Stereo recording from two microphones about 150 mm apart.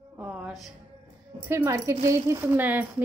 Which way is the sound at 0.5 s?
Centre (ahead or behind).